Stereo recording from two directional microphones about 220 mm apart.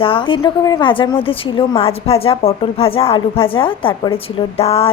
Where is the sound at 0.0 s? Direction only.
25° left (ahead or behind).